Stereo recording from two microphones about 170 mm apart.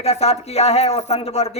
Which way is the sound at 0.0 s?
40° left (ahead or behind).